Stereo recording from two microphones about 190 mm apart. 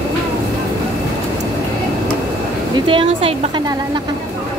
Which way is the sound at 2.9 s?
30° right (ahead or behind).